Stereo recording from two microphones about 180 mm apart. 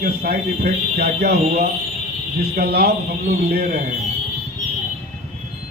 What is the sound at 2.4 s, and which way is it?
Speech, 60° right (ahead or behind).